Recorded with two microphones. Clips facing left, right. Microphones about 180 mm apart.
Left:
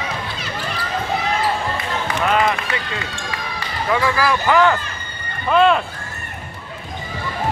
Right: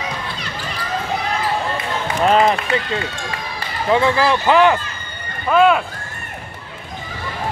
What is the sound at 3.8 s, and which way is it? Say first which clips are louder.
Speech: right 3 dB; 25° right (ahead or behind).